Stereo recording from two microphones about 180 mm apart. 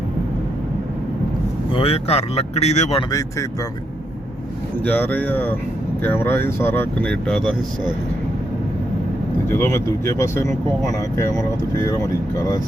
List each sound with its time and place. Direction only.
1.7 s speech: 30° left (ahead or behind)
3.1 s speech: 20° left (ahead or behind)
4.9 s speech: 10° left (ahead or behind)
9.5 s speech: 15° left (ahead or behind)